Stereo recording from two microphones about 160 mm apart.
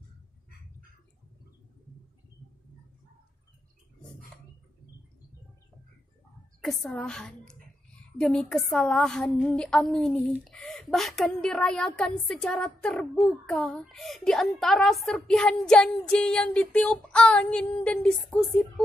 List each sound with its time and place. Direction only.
6.6 s a woman's voice: centre (ahead or behind)